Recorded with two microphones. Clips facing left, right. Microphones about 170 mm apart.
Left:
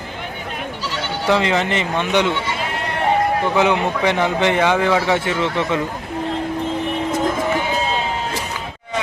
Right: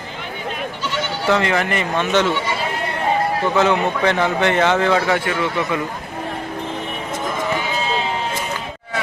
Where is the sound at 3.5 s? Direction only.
15° left (ahead or behind).